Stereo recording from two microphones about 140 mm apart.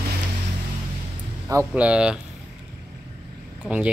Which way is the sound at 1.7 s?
10° right (ahead or behind).